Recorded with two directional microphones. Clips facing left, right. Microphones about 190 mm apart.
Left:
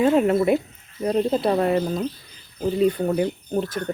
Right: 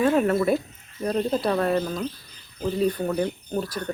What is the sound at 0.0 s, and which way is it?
Speech, 20° left (ahead or behind).